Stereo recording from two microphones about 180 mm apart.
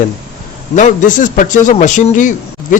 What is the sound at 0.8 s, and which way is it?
A man's voice, 45° left (ahead or behind).